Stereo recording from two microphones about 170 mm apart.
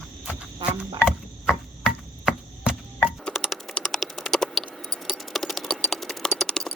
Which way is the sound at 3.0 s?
5° left (ahead or behind).